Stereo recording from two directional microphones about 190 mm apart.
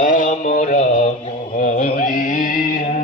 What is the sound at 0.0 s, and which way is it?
Mantra, 40° left (ahead or behind).